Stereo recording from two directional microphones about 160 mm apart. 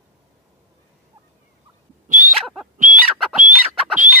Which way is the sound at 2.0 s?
55° right (ahead or behind).